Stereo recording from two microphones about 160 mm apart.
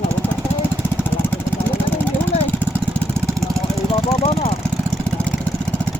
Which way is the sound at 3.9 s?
35° left (ahead or behind).